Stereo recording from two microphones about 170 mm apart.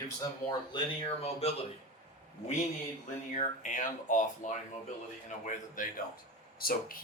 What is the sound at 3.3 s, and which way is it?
Speech, 50° left (ahead or behind).